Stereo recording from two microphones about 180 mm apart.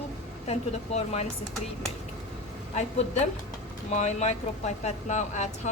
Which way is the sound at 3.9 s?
40° left (ahead or behind).